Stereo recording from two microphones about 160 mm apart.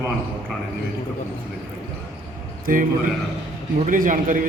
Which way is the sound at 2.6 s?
60° right (ahead or behind).